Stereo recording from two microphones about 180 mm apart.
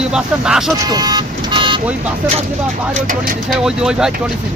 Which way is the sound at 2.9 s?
50° right (ahead or behind).